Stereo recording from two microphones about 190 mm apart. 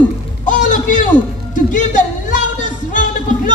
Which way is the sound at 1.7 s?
40° left (ahead or behind).